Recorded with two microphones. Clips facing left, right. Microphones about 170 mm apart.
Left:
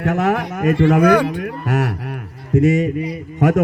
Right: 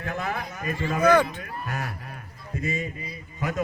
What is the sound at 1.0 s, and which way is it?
Speech, 10° left (ahead or behind).